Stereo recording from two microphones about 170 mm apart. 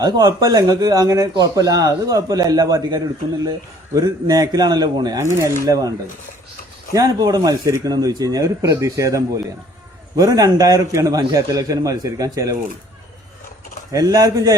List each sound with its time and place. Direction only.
0.0 s speech: 25° right (ahead or behind)
6.9 s speech: 20° right (ahead or behind)
13.9 s speech: 20° right (ahead or behind)